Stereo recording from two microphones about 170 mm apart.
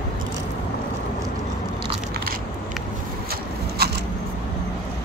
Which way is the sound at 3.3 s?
65° right (ahead or behind).